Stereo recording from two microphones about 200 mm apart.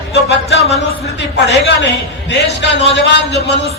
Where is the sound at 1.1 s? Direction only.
60° left (ahead or behind).